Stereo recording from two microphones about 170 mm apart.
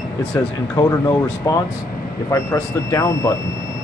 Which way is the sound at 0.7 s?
20° left (ahead or behind).